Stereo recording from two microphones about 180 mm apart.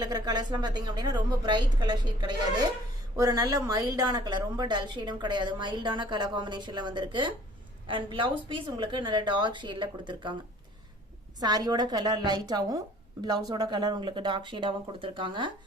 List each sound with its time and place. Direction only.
0.0 s a woman's voice: 20° right (ahead or behind)
11.3 s a woman's voice: 20° right (ahead or behind)